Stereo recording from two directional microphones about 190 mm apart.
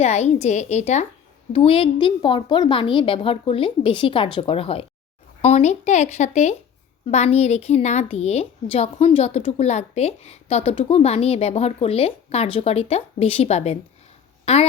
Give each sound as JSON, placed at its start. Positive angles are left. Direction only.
{"t": 0.0, "sound": "a woman's voice", "side_deg": 35}